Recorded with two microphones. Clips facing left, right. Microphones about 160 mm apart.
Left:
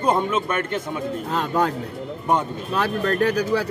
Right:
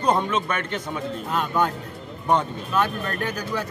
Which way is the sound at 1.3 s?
30° left (ahead or behind).